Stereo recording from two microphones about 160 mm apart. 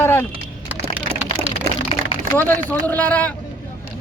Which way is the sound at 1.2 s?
40° left (ahead or behind).